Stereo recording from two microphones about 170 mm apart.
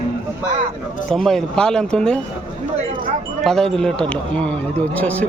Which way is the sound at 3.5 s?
5° left (ahead or behind).